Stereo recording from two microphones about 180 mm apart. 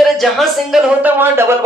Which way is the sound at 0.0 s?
Centre (ahead or behind).